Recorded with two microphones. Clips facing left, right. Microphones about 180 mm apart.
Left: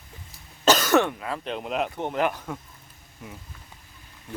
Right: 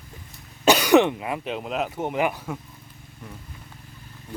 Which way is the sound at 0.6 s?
15° right (ahead or behind).